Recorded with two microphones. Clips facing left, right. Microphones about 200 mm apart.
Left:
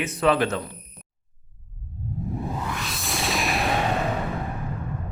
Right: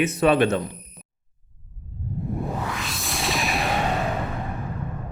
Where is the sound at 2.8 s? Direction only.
Centre (ahead or behind).